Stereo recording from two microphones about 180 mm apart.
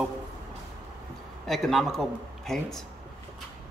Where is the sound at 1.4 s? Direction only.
Centre (ahead or behind).